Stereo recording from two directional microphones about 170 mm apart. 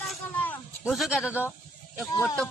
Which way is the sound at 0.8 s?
Centre (ahead or behind).